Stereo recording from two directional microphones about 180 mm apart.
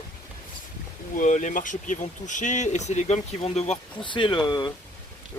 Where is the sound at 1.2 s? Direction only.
45° left (ahead or behind).